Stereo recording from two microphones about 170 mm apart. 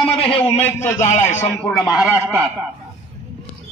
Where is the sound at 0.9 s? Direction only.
45° left (ahead or behind).